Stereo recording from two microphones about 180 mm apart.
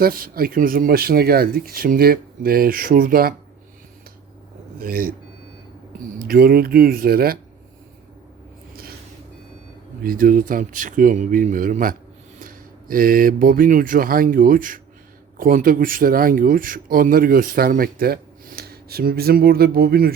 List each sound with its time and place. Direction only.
0.0 s speech: 55° right (ahead or behind)
4.8 s speech: 55° right (ahead or behind)
6.1 s speech: 55° right (ahead or behind)
10.0 s speech: 55° right (ahead or behind)